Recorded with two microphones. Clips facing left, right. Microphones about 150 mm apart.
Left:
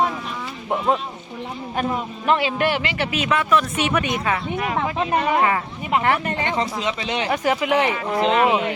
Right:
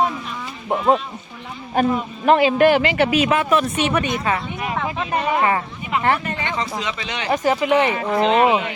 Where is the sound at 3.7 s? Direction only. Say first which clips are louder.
Right 1 dB; 10° left (ahead or behind).